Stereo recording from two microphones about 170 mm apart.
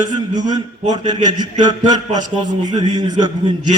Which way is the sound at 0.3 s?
25° right (ahead or behind).